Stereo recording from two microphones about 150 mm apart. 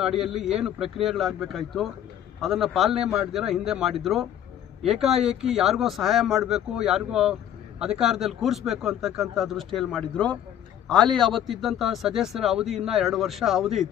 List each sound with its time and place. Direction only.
0.0 s a man's voice: centre (ahead or behind)